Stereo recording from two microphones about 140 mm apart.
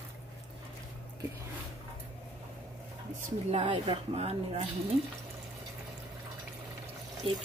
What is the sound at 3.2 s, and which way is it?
Speech, 55° right (ahead or behind).